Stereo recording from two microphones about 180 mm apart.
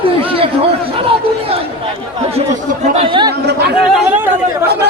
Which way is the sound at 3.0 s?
25° right (ahead or behind).